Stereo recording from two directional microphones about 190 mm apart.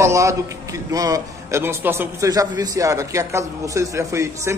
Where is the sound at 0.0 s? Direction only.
15° right (ahead or behind).